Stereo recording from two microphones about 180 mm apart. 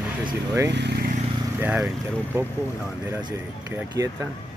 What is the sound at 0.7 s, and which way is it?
Speech, 70° right (ahead or behind).